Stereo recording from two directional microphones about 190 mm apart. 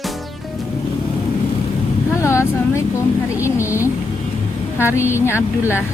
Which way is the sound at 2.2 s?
15° left (ahead or behind).